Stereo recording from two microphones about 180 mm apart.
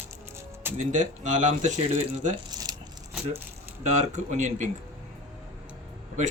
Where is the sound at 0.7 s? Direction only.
45° right (ahead or behind).